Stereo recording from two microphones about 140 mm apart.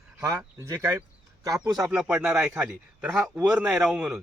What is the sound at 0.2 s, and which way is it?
A man's voice, 20° right (ahead or behind).